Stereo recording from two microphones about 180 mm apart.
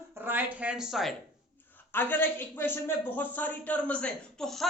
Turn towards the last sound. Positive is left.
turn(degrees=0)  # may be behind; listen again after turning